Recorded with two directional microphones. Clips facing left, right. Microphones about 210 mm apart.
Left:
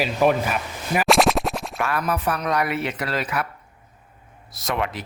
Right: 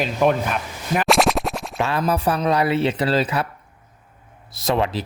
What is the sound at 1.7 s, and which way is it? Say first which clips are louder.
Speech: right 5 dB; 25° right (ahead or behind).